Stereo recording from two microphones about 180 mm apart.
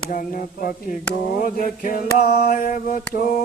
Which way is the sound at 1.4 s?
50° left (ahead or behind).